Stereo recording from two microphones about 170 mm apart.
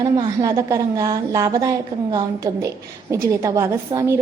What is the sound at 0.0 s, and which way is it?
A woman's voice, 20° right (ahead or behind).